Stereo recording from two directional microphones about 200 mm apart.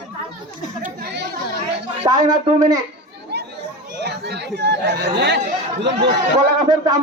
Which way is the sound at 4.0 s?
55° right (ahead or behind).